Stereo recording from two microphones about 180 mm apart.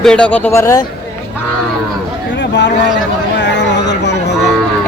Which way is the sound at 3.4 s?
75° left (ahead or behind).